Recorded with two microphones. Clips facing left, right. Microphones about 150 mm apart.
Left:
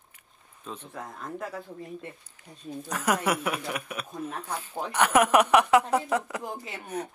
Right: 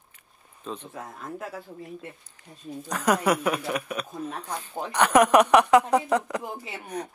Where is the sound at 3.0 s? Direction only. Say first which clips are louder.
Right 4 dB; 35° right (ahead or behind).